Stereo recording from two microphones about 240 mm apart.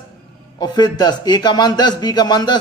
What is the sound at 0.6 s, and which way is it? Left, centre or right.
A man's voice, centre.